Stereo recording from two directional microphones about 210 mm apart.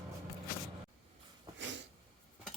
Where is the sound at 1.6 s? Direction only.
55° right (ahead or behind).